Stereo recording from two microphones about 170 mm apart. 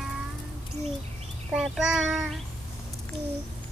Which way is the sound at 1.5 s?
5° right (ahead or behind).